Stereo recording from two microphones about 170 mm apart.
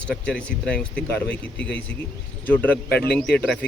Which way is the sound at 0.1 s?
5° left (ahead or behind).